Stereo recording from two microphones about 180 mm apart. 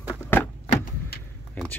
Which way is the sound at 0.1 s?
10° left (ahead or behind).